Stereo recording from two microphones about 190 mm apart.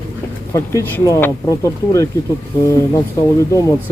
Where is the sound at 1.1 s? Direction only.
15° left (ahead or behind).